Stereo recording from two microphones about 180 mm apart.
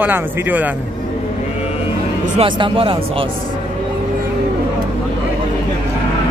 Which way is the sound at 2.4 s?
30° right (ahead or behind).